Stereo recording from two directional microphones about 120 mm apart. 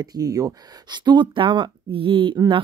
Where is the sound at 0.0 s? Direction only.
30° right (ahead or behind).